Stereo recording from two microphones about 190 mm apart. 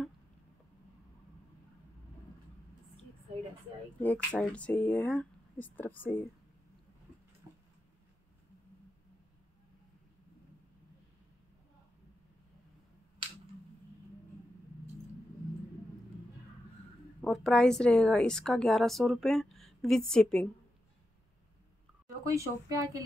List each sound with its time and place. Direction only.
4.0 s speech: 10° left (ahead or behind)
17.2 s a woman's voice: centre (ahead or behind)
22.0 s speech: 15° right (ahead or behind)